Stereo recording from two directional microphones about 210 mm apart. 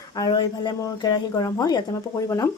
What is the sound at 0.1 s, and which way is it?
Speech, 20° left (ahead or behind).